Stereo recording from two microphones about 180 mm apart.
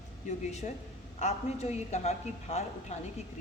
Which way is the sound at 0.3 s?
40° left (ahead or behind).